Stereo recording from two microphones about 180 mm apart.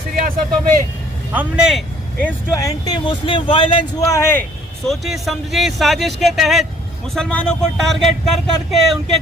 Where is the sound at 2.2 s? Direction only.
15° left (ahead or behind).